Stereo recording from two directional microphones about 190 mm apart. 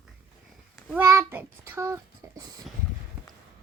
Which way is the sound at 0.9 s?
15° right (ahead or behind).